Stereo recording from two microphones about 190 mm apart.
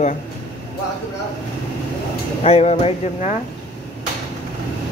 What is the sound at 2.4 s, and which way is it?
Speech, 35° left (ahead or behind).